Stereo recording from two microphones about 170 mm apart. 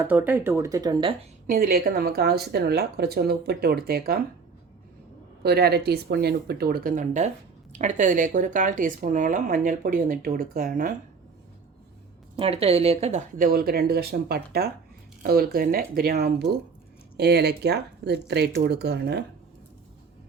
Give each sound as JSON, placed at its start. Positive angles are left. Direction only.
{"t": 0.0, "sound": "speech", "side_deg": -10}
{"t": 1.5, "sound": "a woman's voice", "side_deg": -60}
{"t": 5.4, "sound": "speech", "side_deg": -65}
{"t": 12.4, "sound": "a woman's voice", "side_deg": -35}
{"t": 13.3, "sound": "a woman's voice", "side_deg": -55}